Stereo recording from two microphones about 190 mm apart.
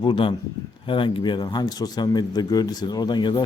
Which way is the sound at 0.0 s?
25° left (ahead or behind).